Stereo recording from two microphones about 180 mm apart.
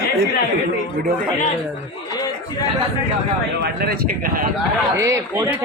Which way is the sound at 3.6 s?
55° right (ahead or behind).